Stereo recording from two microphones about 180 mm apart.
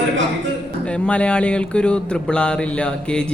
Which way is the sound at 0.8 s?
5° left (ahead or behind).